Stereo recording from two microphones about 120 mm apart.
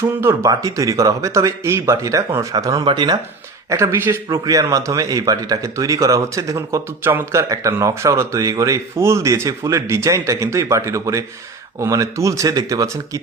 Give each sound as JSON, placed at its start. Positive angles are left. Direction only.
{"t": 0.0, "sound": "a man's voice", "side_deg": -20}
{"t": 3.7, "sound": "a man's voice", "side_deg": -20}
{"t": 4.3, "sound": "a man's voice", "side_deg": -30}